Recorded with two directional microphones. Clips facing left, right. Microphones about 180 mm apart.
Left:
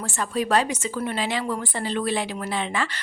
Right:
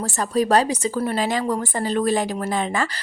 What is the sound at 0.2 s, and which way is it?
A woman's voice, 40° right (ahead or behind).